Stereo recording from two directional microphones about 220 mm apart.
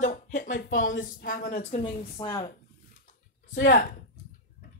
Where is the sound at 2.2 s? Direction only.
15° left (ahead or behind).